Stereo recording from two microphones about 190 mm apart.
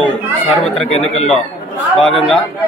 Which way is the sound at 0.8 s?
35° left (ahead or behind).